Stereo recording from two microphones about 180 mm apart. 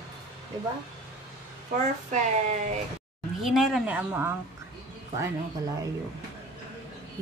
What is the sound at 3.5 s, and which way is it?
Speech, centre (ahead or behind).